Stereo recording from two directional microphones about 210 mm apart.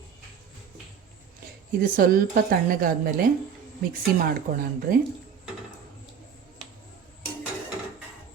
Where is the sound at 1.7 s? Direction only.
45° right (ahead or behind).